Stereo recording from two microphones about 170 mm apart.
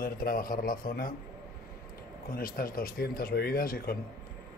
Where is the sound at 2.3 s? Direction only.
55° left (ahead or behind).